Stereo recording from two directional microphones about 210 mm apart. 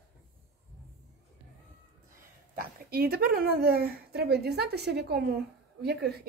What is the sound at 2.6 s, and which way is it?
Speech, 45° right (ahead or behind).